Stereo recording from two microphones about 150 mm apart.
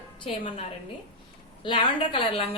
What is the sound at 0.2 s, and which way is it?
Speech, 35° left (ahead or behind).